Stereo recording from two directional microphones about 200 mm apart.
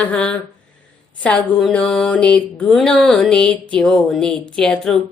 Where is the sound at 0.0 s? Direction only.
5° left (ahead or behind).